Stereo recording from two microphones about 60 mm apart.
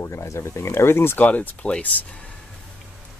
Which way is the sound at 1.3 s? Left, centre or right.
Left.